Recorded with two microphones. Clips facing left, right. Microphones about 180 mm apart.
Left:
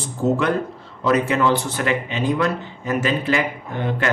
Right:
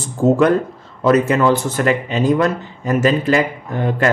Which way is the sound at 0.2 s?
40° right (ahead or behind).